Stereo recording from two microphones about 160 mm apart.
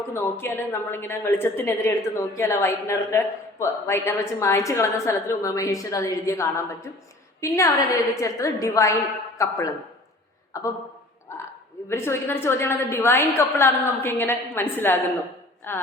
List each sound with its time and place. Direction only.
0.1 s a man's voice: 15° left (ahead or behind)
11.3 s a sound: 15° left (ahead or behind)
11.9 s a man's voice: 15° left (ahead or behind)